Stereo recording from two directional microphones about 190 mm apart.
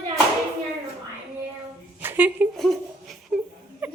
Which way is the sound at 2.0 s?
10° right (ahead or behind).